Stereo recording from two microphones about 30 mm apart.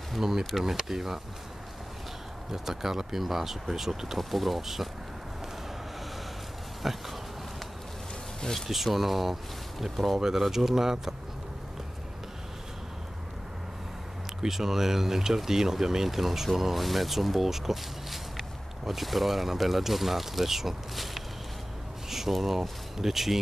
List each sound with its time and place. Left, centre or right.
0.2 s speech: centre
2.5 s speech: centre
4.2 s speech: centre
6.8 s a sound: centre
8.6 s speech: centre
10.1 s speech: centre
14.5 s speech: centre
22.3 s speech: centre